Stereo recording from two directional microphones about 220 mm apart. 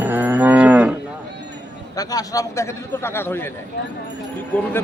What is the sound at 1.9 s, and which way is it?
Speech, 15° left (ahead or behind).